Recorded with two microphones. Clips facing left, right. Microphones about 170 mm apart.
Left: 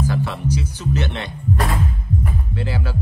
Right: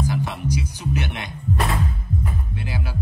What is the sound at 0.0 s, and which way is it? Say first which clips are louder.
Music: left 2 dB; 15° right (ahead or behind).